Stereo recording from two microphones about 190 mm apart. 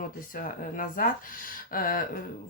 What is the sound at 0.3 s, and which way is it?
Speech, 45° left (ahead or behind).